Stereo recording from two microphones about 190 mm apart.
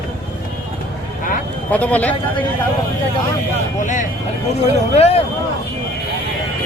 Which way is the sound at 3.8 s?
40° left (ahead or behind).